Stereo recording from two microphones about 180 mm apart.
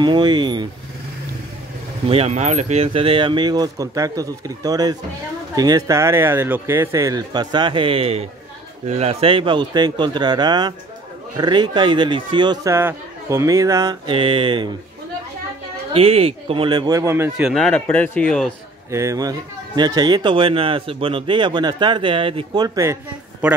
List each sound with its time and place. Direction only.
0.0 s speech: 25° right (ahead or behind)
2.0 s speech: 35° right (ahead or behind)
12.7 s speech: 15° right (ahead or behind)
15.9 s speech: 30° right (ahead or behind); by 17.5 s 15° right (ahead or behind)
17.5 s speech: 5° left (ahead or behind)
18.9 s speech: 15° right (ahead or behind)
23.4 s a man's voice: 5° right (ahead or behind)